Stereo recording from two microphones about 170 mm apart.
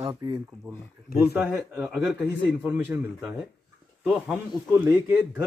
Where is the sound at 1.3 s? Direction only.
10° right (ahead or behind).